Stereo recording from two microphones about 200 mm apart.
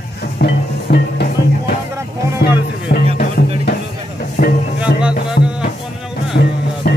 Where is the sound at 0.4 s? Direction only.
55° left (ahead or behind).